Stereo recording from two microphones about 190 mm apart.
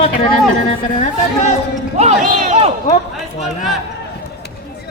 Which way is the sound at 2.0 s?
35° right (ahead or behind).